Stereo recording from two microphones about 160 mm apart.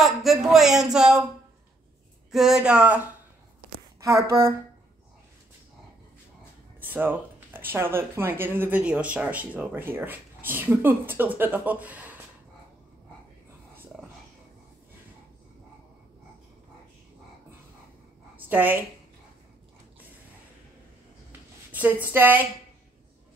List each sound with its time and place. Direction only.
0.0 s speech: centre (ahead or behind)
2.3 s speech: 5° right (ahead or behind)
4.0 s speech: 20° right (ahead or behind)
6.8 s speech: 10° right (ahead or behind)
18.3 s a sound: 10° right (ahead or behind)
21.3 s a sound: 10° right (ahead or behind)